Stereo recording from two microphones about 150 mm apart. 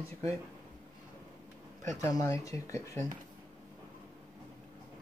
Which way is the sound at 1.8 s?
20° left (ahead or behind).